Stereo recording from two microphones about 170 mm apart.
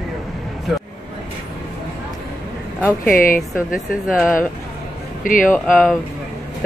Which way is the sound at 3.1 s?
55° left (ahead or behind).